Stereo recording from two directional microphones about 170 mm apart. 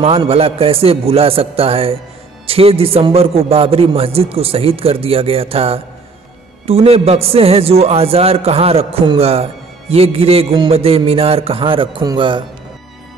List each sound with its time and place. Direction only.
0.0 s a man's voice: 35° right (ahead or behind)